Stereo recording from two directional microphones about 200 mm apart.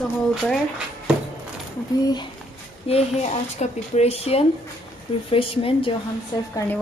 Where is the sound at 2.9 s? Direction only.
35° left (ahead or behind).